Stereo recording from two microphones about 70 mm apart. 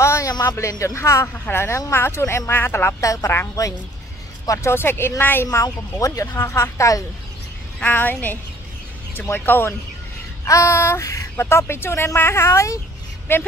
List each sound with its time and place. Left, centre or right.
0.0 s a sound: left
0.3 s speech: left
0.6 s speech: left
3.0 s speech: left
5.5 s speech: left
7.9 s a woman's voice: left
10.4 s speech: left
13.3 s speech: left